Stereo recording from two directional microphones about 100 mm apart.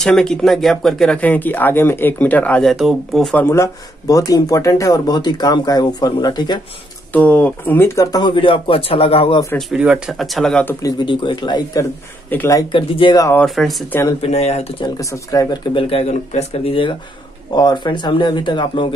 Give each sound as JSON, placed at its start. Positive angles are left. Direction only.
{"t": 0.0, "sound": "speech", "side_deg": 5}
{"t": 2.6, "sound": "speech", "side_deg": 0}
{"t": 3.3, "sound": "speech", "side_deg": 25}
{"t": 7.1, "sound": "speech", "side_deg": 15}
{"t": 8.2, "sound": "a man's voice", "side_deg": 55}
{"t": 9.8, "sound": "speech", "side_deg": -10}
{"t": 10.1, "sound": "speech", "side_deg": 0}
{"t": 10.8, "sound": "speech", "side_deg": 40}
{"t": 11.1, "sound": "a man's voice", "side_deg": 50}
{"t": 13.6, "sound": "speech", "side_deg": 5}
{"t": 14.2, "sound": "speech", "side_deg": 90}
{"t": 15.0, "sound": "speech", "side_deg": 35}
{"t": 15.7, "sound": "speech", "side_deg": 70}
{"t": 17.6, "sound": "speech", "side_deg": 50}